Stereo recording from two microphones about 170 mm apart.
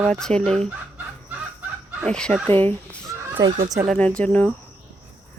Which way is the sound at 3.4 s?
20° right (ahead or behind).